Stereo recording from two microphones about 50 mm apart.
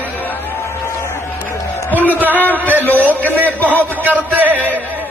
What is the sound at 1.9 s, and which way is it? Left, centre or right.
Speech, left.